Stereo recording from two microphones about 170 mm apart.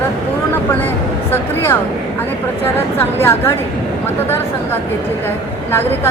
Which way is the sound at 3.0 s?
15° left (ahead or behind).